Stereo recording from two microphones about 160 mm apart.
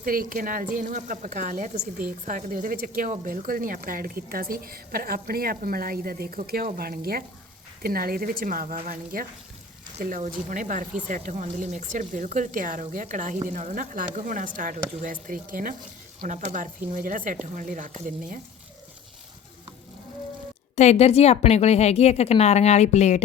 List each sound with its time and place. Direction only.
0.0 s speech: 60° right (ahead or behind)
16.2 s speech: 50° right (ahead or behind)
20.7 s a woman's voice: 45° left (ahead or behind)